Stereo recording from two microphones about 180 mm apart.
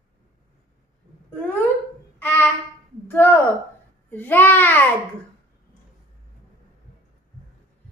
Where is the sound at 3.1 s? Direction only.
10° left (ahead or behind).